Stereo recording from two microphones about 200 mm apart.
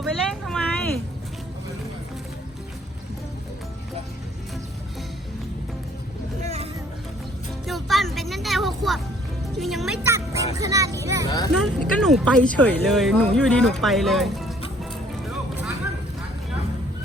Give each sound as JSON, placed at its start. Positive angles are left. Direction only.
{"t": 0.0, "sound": "a sound", "side_deg": 0}
{"t": 7.7, "sound": "music", "side_deg": 0}
{"t": 10.1, "sound": "children playing", "side_deg": -15}
{"t": 10.6, "sound": "a sound", "side_deg": -15}
{"t": 11.3, "sound": "vehicle", "side_deg": 20}
{"t": 11.6, "sound": "speech", "side_deg": 5}